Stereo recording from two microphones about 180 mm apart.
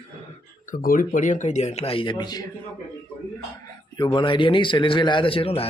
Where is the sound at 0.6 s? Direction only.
50° left (ahead or behind); by 2.5 s 20° left (ahead or behind).